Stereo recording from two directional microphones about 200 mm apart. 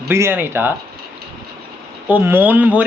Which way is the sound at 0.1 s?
10° right (ahead or behind).